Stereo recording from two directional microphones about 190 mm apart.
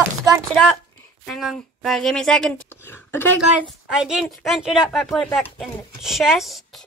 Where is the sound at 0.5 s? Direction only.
Centre (ahead or behind).